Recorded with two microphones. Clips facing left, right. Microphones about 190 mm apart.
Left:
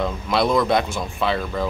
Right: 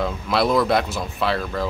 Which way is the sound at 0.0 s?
Centre (ahead or behind).